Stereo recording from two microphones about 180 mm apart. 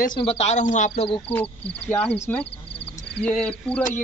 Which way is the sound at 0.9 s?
30° left (ahead or behind).